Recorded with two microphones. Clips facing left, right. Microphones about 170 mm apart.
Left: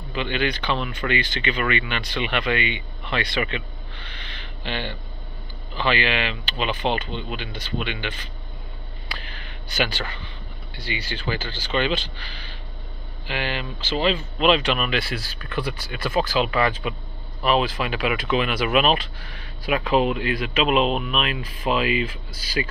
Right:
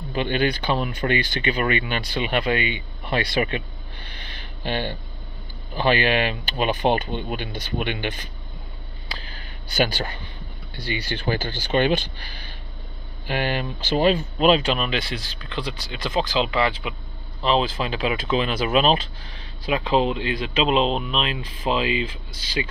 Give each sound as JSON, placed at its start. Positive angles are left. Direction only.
{"t": 0.1, "sound": "speech", "side_deg": -45}
{"t": 4.6, "sound": "speech", "side_deg": -45}
{"t": 9.3, "sound": "a sound", "side_deg": -35}
{"t": 10.8, "sound": "speech", "side_deg": -45}
{"t": 13.3, "sound": "speech", "side_deg": -50}